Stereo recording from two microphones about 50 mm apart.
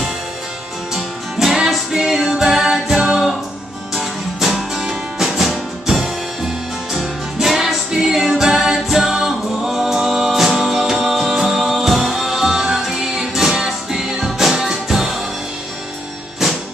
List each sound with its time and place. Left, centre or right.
0.9 s music: centre